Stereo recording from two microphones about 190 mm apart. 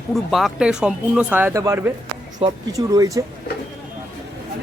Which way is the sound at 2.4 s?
30° right (ahead or behind).